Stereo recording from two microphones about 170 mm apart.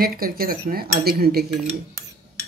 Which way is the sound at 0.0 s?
60° right (ahead or behind).